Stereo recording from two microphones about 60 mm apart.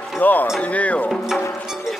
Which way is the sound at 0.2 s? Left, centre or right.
Left.